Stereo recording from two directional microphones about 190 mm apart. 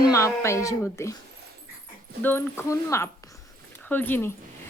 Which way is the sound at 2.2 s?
10° left (ahead or behind).